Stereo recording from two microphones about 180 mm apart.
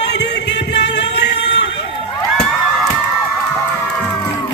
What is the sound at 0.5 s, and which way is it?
Music, 70° left (ahead or behind).